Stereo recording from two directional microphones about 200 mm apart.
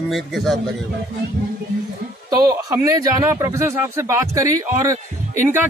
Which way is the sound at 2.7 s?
15° right (ahead or behind).